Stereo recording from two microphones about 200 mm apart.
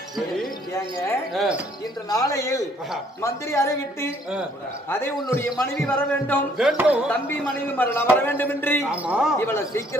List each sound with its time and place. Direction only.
0.7 s a woman's voice: 15° left (ahead or behind)
1.3 s speech: 5° right (ahead or behind)
2.0 s a woman's voice: 15° left (ahead or behind)
6.6 s music: 5° right (ahead or behind)
7.8 s a woman's voice: 10° left (ahead or behind)
8.9 s speech: 5° right (ahead or behind)
9.4 s a woman's voice: 15° left (ahead or behind)